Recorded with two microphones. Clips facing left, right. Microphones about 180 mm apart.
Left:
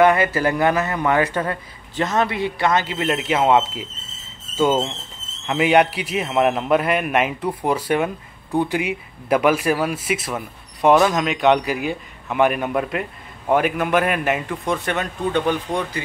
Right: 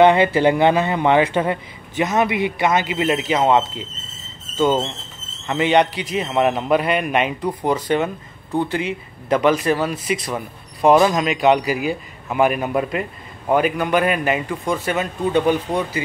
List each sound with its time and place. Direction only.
0.0 s speech: 25° right (ahead or behind)
3.1 s a man's voice: centre (ahead or behind)